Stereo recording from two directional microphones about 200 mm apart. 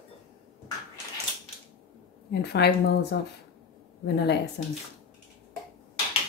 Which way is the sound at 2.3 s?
55° left (ahead or behind).